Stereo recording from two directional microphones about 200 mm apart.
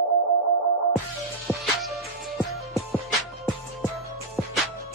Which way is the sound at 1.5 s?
Centre (ahead or behind).